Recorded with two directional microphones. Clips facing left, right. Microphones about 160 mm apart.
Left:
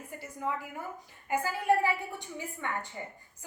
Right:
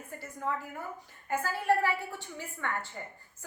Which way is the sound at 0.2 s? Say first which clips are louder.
Even; 10° left (ahead or behind).